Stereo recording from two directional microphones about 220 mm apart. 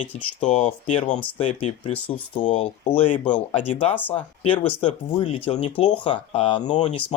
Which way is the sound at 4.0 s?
10° left (ahead or behind).